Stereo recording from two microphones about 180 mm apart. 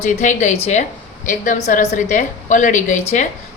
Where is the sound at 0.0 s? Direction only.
40° left (ahead or behind).